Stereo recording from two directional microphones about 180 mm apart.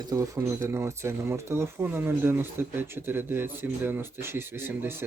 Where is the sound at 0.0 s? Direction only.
20° right (ahead or behind).